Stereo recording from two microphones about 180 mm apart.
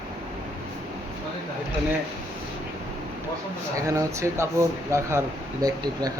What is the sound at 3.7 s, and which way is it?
Speech, 15° right (ahead or behind).